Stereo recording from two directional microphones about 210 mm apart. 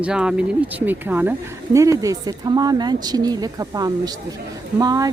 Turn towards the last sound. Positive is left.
turn(degrees=-15)  # may be behind; listen again after turning